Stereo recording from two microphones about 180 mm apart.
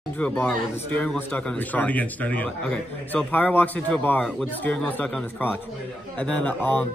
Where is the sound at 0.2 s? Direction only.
5° left (ahead or behind).